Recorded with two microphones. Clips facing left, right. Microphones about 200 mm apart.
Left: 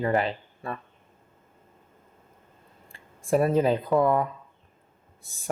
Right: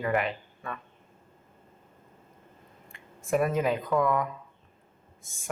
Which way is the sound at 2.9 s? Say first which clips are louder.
Left 3 dB; 30° left (ahead or behind).